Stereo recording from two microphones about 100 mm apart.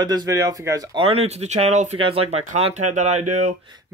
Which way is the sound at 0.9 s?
85° right.